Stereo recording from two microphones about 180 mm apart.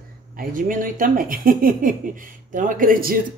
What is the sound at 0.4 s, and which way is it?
Speech, 50° right (ahead or behind).